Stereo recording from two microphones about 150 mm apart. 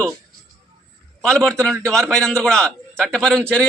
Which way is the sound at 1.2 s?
5° left (ahead or behind).